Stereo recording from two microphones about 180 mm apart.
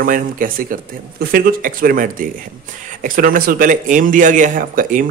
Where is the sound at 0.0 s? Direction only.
50° right (ahead or behind).